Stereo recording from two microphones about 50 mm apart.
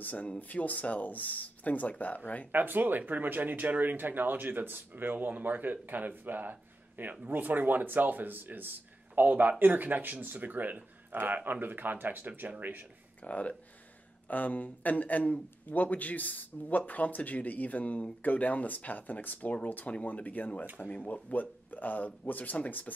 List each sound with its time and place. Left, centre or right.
0.0 s speech: left
2.5 s speech: right
13.2 s speech: left